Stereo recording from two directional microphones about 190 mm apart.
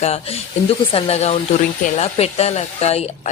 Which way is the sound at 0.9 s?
30° left (ahead or behind).